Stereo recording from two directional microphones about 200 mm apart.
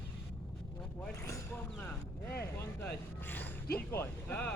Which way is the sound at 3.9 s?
10° left (ahead or behind).